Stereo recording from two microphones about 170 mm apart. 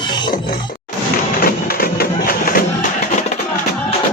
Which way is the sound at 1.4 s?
60° left (ahead or behind).